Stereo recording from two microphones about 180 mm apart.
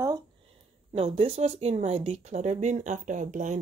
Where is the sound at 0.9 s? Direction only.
35° right (ahead or behind).